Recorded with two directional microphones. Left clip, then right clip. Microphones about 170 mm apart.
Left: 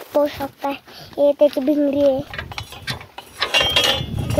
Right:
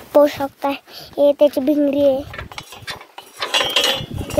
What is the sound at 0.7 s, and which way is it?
A child's voice, 30° right (ahead or behind).